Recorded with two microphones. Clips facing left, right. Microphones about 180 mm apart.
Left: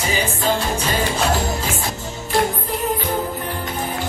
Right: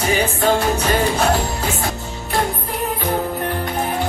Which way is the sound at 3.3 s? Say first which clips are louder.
Right 4 dB; 55° right (ahead or behind).